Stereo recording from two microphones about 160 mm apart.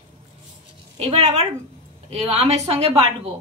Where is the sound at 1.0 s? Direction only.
40° right (ahead or behind).